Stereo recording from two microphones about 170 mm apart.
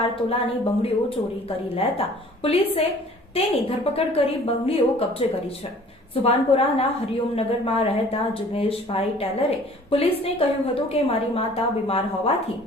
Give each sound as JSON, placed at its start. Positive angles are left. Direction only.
{"t": 0.3, "sound": "speech", "side_deg": 35}